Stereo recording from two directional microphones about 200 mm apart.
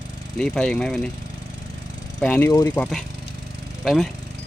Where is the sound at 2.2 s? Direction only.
5° left (ahead or behind).